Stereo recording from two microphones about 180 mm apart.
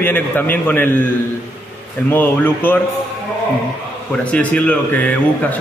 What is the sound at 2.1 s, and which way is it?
Speech, 10° left (ahead or behind).